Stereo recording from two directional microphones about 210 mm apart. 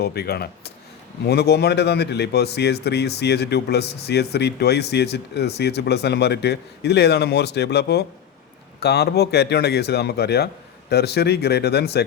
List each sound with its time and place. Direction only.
0.0 s a man's voice: 50° left (ahead or behind)